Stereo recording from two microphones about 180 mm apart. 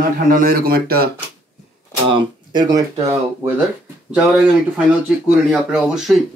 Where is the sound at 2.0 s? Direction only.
25° right (ahead or behind).